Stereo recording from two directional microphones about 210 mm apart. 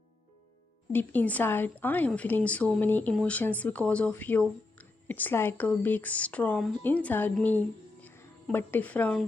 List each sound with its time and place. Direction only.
0.9 s a woman's voice: 10° left (ahead or behind)